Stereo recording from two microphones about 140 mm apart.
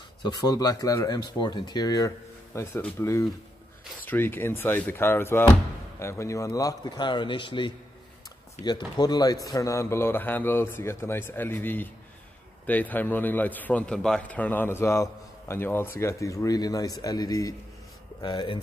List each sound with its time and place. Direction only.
0.2 s a man's voice: 30° left (ahead or behind)